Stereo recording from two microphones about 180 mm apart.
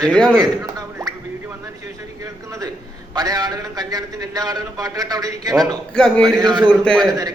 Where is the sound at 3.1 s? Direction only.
20° right (ahead or behind).